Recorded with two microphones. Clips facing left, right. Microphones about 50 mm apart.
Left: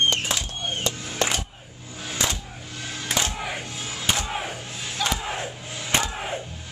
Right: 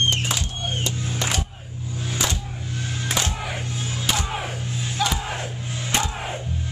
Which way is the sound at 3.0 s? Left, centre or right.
Centre.